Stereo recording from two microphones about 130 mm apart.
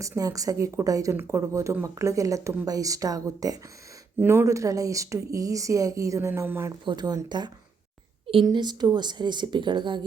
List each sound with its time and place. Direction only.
0.2 s speech: 25° right (ahead or behind)
6.8 s a woman's voice: 30° right (ahead or behind)